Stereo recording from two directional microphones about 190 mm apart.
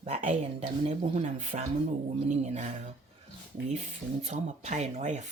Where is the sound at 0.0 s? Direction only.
35° right (ahead or behind).